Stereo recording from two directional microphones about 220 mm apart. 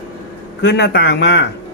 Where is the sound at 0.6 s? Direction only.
50° left (ahead or behind).